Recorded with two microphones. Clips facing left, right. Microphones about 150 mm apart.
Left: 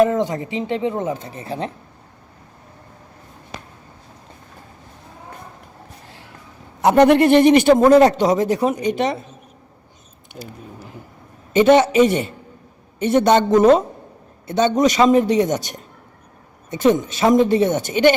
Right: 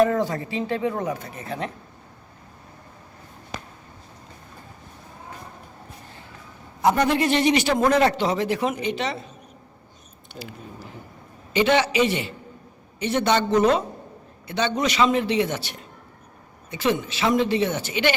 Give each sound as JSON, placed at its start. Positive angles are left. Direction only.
{"t": 0.0, "sound": "speech", "side_deg": 20}
{"t": 6.8, "sound": "speech", "side_deg": 70}
{"t": 11.5, "sound": "speech", "side_deg": 45}